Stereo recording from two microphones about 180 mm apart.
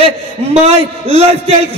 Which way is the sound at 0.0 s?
35° right (ahead or behind).